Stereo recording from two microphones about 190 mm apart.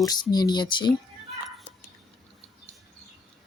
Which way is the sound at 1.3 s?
Centre (ahead or behind).